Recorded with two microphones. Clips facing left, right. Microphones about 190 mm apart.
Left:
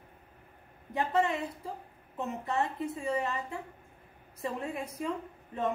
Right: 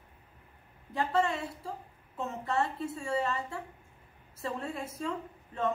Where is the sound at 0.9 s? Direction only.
20° left (ahead or behind).